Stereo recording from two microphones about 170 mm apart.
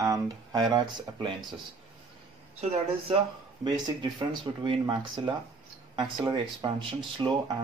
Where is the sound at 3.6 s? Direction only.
25° right (ahead or behind).